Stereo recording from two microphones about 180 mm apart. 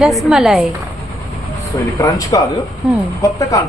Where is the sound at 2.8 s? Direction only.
5° right (ahead or behind).